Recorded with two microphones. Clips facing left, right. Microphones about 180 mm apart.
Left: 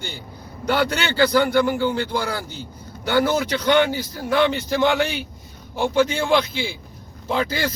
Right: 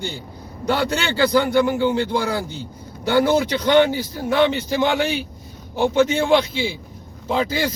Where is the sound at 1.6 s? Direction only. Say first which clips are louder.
Right 2 dB; 20° right (ahead or behind).